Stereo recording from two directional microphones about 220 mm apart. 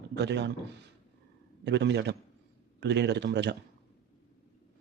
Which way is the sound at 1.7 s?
50° right (ahead or behind).